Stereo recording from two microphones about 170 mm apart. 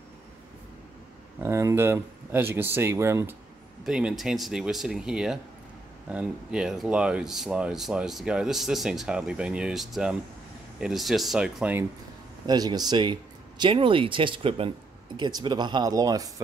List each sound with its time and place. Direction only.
1.4 s speech: 15° right (ahead or behind)
3.8 s speech: 5° right (ahead or behind)
12.4 s speech: 25° right (ahead or behind)